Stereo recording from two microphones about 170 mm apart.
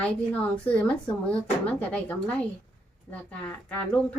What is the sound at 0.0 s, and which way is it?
A woman's voice, 5° left (ahead or behind).